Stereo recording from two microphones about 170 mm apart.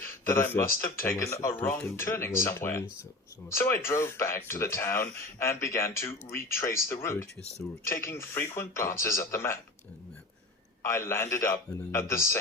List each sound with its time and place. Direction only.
0.3 s speech: 15° left (ahead or behind)
10.8 s speech: 15° left (ahead or behind)